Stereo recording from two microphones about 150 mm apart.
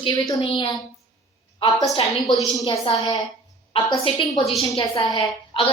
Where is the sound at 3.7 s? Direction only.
35° left (ahead or behind).